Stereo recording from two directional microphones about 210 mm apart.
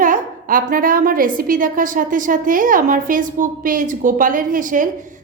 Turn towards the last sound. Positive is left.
turn(degrees=-40)  # may be behind; listen again after turning